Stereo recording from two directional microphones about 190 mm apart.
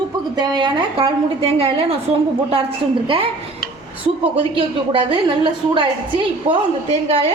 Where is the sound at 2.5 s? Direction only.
30° right (ahead or behind).